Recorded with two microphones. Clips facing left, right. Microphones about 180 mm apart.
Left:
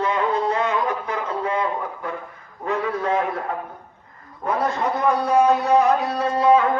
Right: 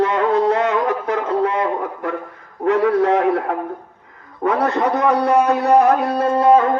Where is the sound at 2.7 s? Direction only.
75° right (ahead or behind).